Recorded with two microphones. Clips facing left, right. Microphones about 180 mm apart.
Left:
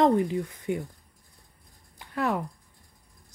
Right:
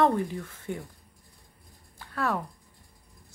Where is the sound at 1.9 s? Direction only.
15° left (ahead or behind).